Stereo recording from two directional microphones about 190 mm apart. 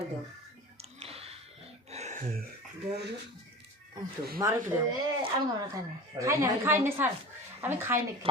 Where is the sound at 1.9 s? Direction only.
40° right (ahead or behind).